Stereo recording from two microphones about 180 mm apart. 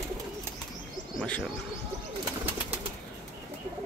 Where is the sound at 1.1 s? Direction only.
5° left (ahead or behind).